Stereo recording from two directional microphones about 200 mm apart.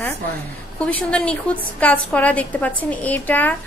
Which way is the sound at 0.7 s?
5° left (ahead or behind).